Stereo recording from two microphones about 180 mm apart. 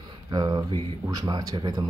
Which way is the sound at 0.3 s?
25° right (ahead or behind).